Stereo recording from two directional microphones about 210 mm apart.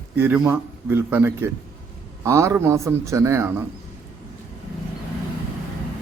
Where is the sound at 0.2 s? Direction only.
10° right (ahead or behind).